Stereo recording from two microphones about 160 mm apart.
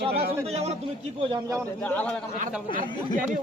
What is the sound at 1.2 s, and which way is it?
Speech, 30° right (ahead or behind).